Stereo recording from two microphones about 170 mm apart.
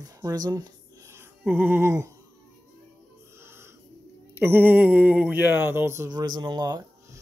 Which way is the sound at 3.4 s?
15° right (ahead or behind).